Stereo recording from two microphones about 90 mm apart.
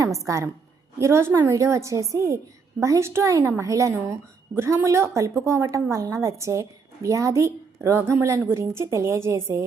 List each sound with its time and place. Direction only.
0.3 s a woman's voice: 35° right (ahead or behind)